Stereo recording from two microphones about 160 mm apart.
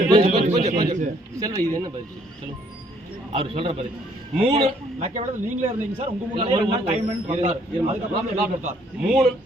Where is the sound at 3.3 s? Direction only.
35° right (ahead or behind).